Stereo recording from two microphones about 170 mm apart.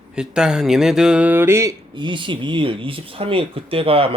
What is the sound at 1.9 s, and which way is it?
Speech, 30° right (ahead or behind).